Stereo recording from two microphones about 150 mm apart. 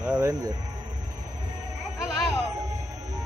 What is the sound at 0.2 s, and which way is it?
Music, 25° right (ahead or behind).